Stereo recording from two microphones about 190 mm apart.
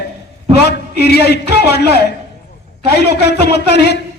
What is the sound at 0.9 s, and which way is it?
A man's voice, 60° left (ahead or behind).